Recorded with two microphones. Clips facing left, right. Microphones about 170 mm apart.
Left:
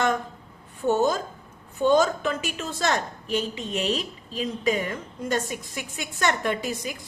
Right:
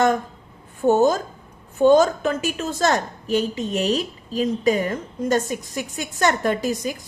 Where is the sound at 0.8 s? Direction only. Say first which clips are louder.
Right 5 dB; 45° right (ahead or behind).